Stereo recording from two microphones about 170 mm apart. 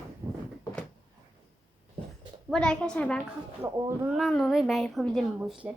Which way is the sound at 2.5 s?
5° left (ahead or behind).